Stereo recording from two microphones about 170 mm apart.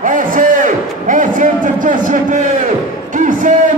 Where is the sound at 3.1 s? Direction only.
50° right (ahead or behind).